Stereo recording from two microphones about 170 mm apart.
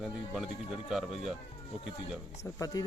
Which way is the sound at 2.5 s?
20° left (ahead or behind).